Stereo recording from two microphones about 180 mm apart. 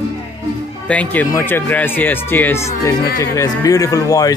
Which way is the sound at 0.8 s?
10° left (ahead or behind).